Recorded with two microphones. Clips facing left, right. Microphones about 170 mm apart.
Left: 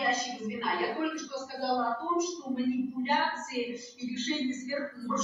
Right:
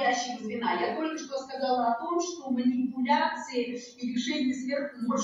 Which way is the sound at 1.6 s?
30° right (ahead or behind).